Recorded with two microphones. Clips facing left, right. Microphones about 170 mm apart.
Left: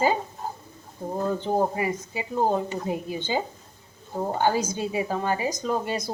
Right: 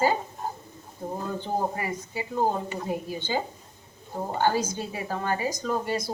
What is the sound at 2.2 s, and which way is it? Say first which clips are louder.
A woman's voice: left 2 dB; 15° left (ahead or behind).